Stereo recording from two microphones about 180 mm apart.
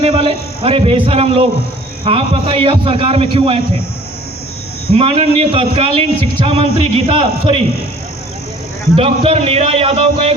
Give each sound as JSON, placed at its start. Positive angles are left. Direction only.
{"t": 0.0, "sound": "a man's voice", "side_deg": -30}
{"t": 4.9, "sound": "a man's voice", "side_deg": -35}
{"t": 9.0, "sound": "a man's voice", "side_deg": -30}